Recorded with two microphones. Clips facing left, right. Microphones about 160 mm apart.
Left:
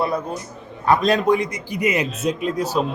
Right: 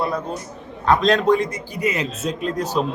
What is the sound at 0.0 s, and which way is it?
A man's voice, 10° left (ahead or behind).